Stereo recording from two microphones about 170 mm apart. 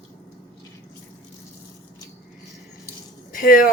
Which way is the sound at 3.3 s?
50° left (ahead or behind).